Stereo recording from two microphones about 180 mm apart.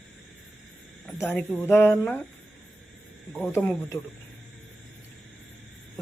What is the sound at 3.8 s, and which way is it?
Speech, 15° left (ahead or behind).